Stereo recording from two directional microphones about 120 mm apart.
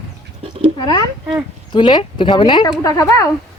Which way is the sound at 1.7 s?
40° left (ahead or behind).